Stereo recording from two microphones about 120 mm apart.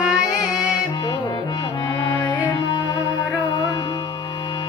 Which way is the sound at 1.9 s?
25° left (ahead or behind).